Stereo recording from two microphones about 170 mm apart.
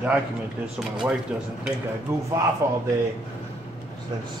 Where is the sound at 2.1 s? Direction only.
15° right (ahead or behind).